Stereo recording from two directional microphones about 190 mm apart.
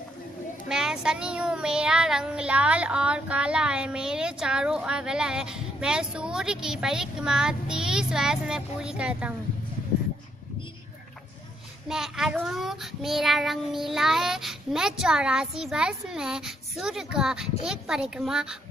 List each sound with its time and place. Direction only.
0.7 s child singing: 5° right (ahead or behind)
11.9 s child singing: centre (ahead or behind)